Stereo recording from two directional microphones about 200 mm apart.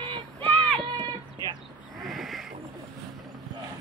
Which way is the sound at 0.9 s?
25° right (ahead or behind).